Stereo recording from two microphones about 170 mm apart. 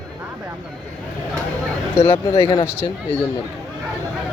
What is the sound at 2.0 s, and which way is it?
Speech, 35° left (ahead or behind).